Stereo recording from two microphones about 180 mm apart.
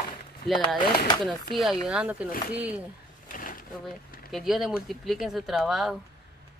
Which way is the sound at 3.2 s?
50° left (ahead or behind).